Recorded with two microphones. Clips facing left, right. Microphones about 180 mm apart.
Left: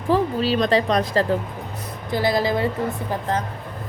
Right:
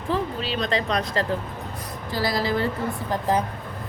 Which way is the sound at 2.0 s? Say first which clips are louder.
Left 4 dB; 20° left (ahead or behind).